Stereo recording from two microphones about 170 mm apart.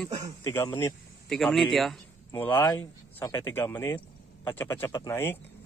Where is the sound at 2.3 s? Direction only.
10° left (ahead or behind).